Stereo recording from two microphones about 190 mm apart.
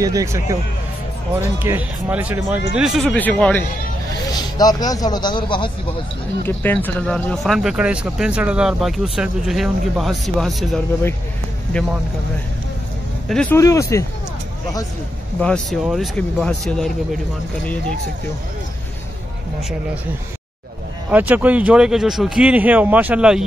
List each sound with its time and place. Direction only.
0.0 s a man's voice: 15° right (ahead or behind); by 3.6 s 5° left (ahead or behind)
4.6 s speech: 20° left (ahead or behind)
6.4 s speech: 10° left (ahead or behind)
13.3 s speech: 5° left (ahead or behind)
13.6 s speech: 15° left (ahead or behind)
15.4 s speech: centre (ahead or behind)
21.1 s a man's voice: 10° right (ahead or behind)